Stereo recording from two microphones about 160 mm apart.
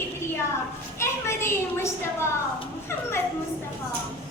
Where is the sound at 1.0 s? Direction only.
15° left (ahead or behind).